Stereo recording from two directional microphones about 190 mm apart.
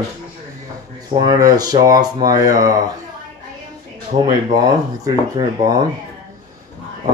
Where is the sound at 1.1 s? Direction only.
20° right (ahead or behind).